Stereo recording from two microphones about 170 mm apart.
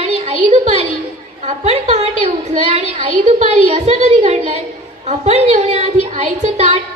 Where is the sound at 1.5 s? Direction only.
40° right (ahead or behind).